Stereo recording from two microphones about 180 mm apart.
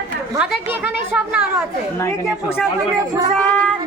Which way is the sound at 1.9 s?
15° left (ahead or behind).